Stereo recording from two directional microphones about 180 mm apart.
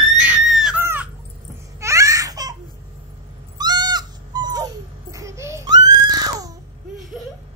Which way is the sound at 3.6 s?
25° right (ahead or behind).